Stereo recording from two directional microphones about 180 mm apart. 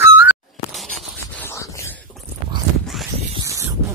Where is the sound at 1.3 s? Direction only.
15° left (ahead or behind).